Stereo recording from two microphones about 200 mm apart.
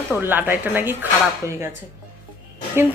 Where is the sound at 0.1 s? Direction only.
10° right (ahead or behind).